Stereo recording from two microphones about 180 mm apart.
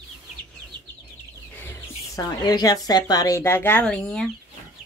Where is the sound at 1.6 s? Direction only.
15° left (ahead or behind).